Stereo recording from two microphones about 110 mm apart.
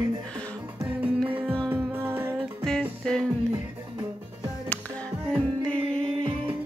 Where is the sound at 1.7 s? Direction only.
20° right (ahead or behind).